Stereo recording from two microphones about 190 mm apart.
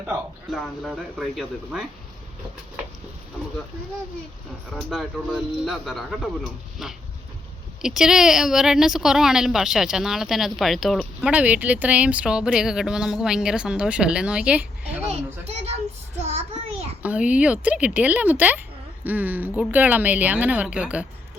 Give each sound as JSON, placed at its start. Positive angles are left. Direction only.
{"t": 0.0, "sound": "speech", "side_deg": -5}
{"t": 4.7, "sound": "speech", "side_deg": 0}
{"t": 15.1, "sound": "a child's voice", "side_deg": -35}
{"t": 16.1, "sound": "a sound", "side_deg": -35}
{"t": 17.0, "sound": "speech", "side_deg": -5}